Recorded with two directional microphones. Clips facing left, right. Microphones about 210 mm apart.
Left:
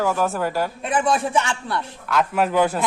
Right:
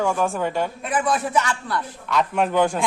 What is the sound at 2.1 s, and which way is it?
Speech, 5° left (ahead or behind).